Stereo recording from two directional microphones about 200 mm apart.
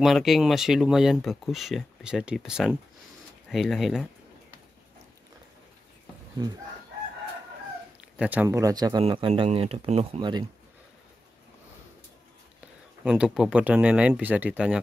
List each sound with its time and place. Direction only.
0.0 s speech: centre (ahead or behind)
6.4 s speech: 25° right (ahead or behind)
8.0 s speech: 5° right (ahead or behind); by 10.4 s 25° right (ahead or behind)
13.0 s speech: 5° right (ahead or behind)